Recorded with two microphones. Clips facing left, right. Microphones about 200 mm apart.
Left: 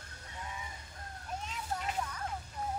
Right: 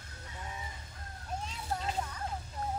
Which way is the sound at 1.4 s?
30° right (ahead or behind).